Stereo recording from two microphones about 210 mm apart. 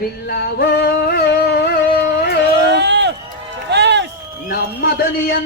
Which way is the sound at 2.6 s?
55° right (ahead or behind).